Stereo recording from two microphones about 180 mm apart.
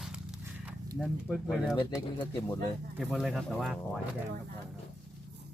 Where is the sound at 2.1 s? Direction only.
20° left (ahead or behind).